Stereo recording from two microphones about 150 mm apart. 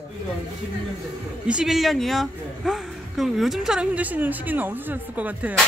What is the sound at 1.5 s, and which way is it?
Speech, 5° right (ahead or behind).